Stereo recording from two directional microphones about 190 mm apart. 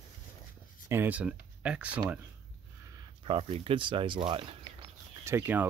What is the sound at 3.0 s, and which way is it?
Speech, 30° right (ahead or behind).